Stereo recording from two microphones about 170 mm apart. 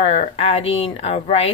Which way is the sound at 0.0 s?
35° left (ahead or behind).